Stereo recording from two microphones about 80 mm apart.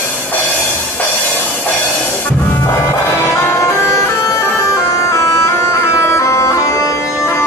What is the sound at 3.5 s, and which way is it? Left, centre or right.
Bagpipes, left.